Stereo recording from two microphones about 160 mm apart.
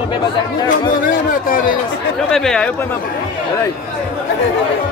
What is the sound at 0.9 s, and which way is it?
Speech, 60° left (ahead or behind).